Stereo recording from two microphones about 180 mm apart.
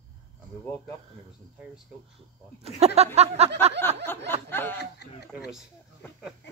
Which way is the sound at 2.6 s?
35° right (ahead or behind).